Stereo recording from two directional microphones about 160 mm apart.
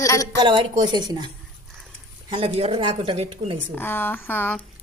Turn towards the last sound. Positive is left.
turn(degrees=10)  # may be behind; listen again after turning